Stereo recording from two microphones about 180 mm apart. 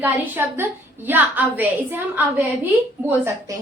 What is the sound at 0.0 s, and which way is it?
A woman's voice, 10° right (ahead or behind).